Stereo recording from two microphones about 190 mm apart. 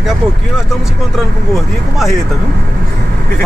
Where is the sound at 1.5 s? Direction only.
Centre (ahead or behind).